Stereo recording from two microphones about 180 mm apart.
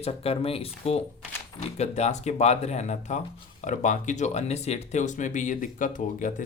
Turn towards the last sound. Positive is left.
turn(degrees=45)  # may be behind; listen again after turning